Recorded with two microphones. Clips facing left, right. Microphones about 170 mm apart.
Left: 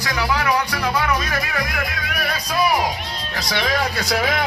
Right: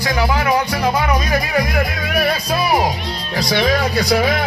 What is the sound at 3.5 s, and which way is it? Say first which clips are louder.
Speech: right 5 dB; 35° right (ahead or behind).